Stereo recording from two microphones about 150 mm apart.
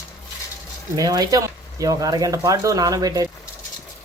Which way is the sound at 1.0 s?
25° right (ahead or behind).